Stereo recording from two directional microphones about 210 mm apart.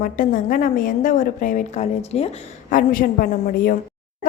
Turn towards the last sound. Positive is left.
turn(degrees=40)  # may be behind; listen again after turning